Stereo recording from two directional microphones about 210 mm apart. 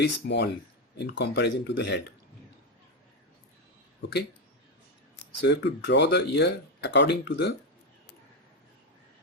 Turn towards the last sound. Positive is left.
turn(degrees=55)  # may be behind; listen again after turning